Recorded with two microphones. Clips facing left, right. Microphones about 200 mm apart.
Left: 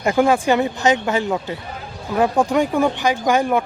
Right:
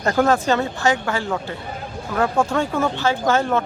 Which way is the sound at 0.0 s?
10° left (ahead or behind).